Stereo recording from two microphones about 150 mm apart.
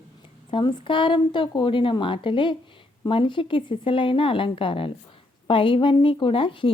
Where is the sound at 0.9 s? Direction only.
35° left (ahead or behind).